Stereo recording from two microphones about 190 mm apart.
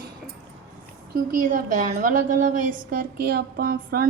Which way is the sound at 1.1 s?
45° right (ahead or behind).